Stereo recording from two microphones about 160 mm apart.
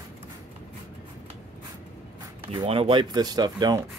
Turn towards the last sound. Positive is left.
turn(degrees=-25)  # may be behind; listen again after turning